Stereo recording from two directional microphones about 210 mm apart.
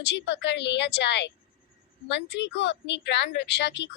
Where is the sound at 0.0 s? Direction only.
55° left (ahead or behind).